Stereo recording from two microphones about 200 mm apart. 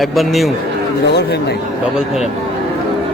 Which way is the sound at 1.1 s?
55° left (ahead or behind).